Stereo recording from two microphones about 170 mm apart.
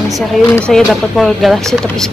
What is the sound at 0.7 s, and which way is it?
A woman's voice, centre (ahead or behind).